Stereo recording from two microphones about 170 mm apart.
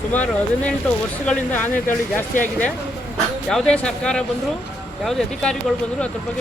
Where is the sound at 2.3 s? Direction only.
50° left (ahead or behind).